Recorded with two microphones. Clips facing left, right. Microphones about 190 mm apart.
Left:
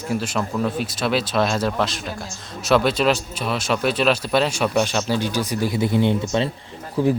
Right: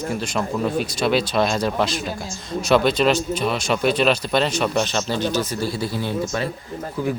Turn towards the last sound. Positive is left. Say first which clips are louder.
# left 4 dB
turn(degrees=30)  # may be behind; listen again after turning